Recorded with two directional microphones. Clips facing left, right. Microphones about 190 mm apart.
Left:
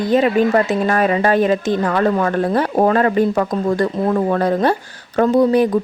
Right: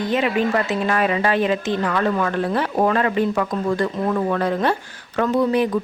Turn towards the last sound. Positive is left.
turn(degrees=40)  # may be behind; listen again after turning